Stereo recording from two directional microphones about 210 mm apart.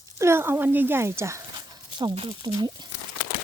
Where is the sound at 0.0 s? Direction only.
10° right (ahead or behind).